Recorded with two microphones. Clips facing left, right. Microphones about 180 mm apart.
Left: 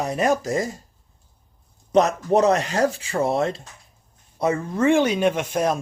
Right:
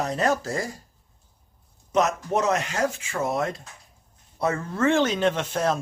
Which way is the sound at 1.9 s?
35° left (ahead or behind).